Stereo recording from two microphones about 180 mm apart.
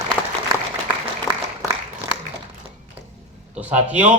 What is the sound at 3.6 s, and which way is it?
Speech, 10° right (ahead or behind).